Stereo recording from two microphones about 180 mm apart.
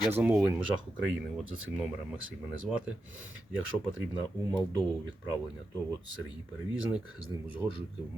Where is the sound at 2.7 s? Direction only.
Centre (ahead or behind).